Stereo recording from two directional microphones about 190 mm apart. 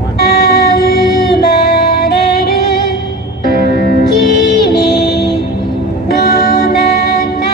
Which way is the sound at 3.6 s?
50° right (ahead or behind).